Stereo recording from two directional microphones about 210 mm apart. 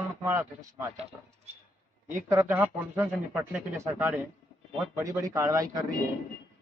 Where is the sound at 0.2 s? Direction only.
10° right (ahead or behind).